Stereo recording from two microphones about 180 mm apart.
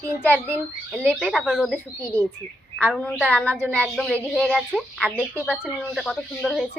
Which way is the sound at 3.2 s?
10° right (ahead or behind).